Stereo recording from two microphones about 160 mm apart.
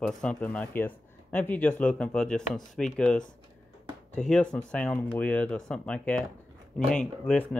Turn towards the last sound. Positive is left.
turn(degrees=5)  # may be behind; listen again after turning